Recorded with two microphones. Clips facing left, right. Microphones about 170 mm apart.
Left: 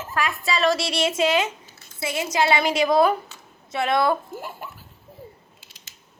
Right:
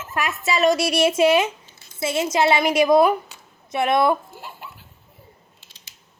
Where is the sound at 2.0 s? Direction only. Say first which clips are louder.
Right 3 dB; 20° right (ahead or behind).